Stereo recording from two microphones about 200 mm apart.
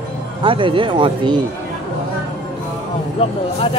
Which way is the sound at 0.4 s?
25° right (ahead or behind).